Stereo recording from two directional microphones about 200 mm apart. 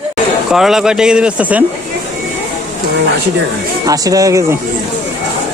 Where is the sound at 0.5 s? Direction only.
Centre (ahead or behind).